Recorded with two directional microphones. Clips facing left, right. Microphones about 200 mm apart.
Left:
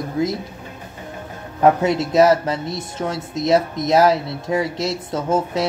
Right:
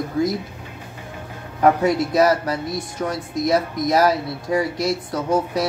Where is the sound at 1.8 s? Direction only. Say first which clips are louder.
Left 2 dB; 25° left (ahead or behind).